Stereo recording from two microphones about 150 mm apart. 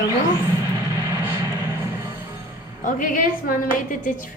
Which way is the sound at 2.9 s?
60° left (ahead or behind).